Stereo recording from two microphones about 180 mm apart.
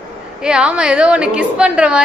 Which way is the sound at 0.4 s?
5° right (ahead or behind).